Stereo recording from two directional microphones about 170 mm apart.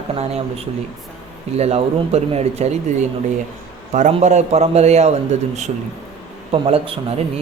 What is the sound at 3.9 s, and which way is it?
A man's voice, 45° right (ahead or behind).